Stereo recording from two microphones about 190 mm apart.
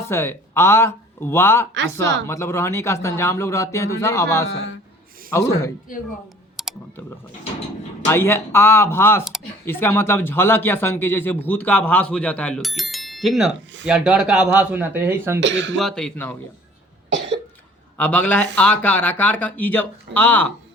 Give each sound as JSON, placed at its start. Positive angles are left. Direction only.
{"t": 0.0, "sound": "speech", "side_deg": 15}
{"t": 1.7, "sound": "speech", "side_deg": -75}
{"t": 2.2, "sound": "speech", "side_deg": 15}
{"t": 6.6, "sound": "clicking", "side_deg": 0}
{"t": 8.0, "sound": "speech", "side_deg": 10}
{"t": 15.4, "sound": "speech", "side_deg": -70}
{"t": 15.8, "sound": "speech", "side_deg": 5}
{"t": 17.9, "sound": "speech", "side_deg": 10}